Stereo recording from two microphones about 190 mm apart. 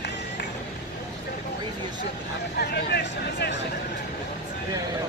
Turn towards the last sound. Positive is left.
turn(degrees=60)  # may be behind; listen again after turning